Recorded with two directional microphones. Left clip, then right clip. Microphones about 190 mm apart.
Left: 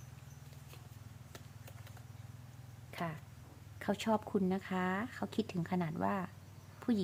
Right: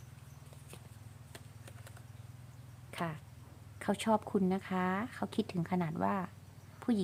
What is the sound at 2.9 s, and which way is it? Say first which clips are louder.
Speech: right 2 dB; 20° right (ahead or behind).